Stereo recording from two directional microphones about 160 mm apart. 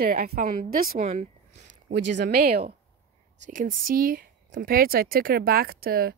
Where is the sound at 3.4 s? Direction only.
55° right (ahead or behind).